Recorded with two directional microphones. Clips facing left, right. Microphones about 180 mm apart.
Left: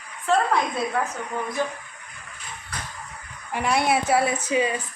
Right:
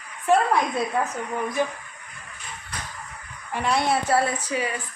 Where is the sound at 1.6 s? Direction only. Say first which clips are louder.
Right 2 dB; 15° right (ahead or behind).